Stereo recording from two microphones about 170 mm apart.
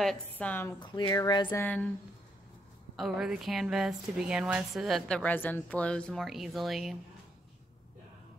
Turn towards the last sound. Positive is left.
turn(degrees=0)  # may be behind; listen again after turning